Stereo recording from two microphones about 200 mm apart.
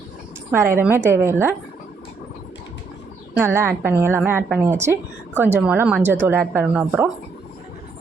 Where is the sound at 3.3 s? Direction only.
10° right (ahead or behind).